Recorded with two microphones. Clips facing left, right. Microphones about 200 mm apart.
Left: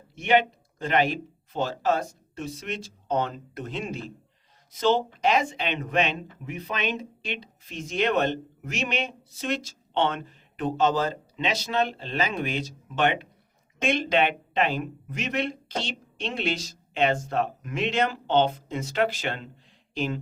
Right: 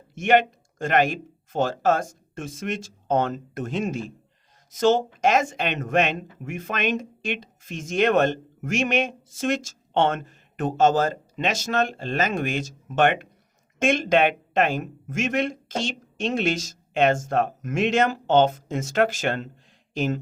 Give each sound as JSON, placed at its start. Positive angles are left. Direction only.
{"t": 0.1, "sound": "speech", "side_deg": -50}